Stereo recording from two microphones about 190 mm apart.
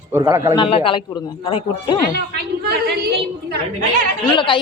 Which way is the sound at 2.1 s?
60° right (ahead or behind).